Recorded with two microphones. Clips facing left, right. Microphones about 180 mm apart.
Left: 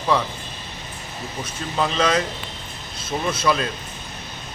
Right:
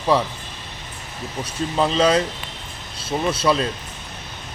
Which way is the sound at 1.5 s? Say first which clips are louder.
Right 4 dB; 35° right (ahead or behind).